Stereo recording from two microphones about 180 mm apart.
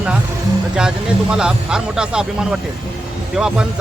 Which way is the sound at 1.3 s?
5° right (ahead or behind).